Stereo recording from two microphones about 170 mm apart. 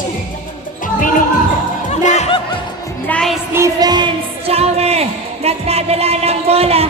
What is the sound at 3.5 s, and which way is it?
Music, 20° right (ahead or behind).